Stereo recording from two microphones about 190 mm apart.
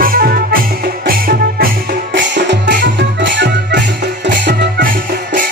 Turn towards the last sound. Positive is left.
turn(degrees=-60)  # may be behind; listen again after turning